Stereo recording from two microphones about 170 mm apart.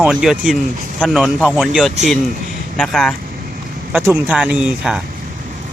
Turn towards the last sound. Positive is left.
turn(degrees=-5)  # may be behind; listen again after turning